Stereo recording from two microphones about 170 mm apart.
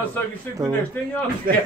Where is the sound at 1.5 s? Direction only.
55° right (ahead or behind).